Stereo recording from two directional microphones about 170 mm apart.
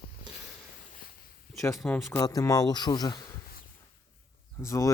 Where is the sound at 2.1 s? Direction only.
20° left (ahead or behind).